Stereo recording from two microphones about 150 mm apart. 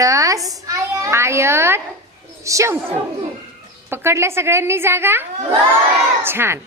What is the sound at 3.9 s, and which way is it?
A woman's voice, 15° right (ahead or behind).